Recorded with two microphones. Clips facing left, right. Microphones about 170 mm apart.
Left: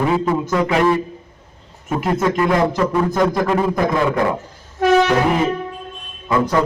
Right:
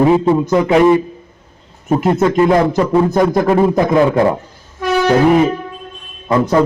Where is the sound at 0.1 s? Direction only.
25° right (ahead or behind).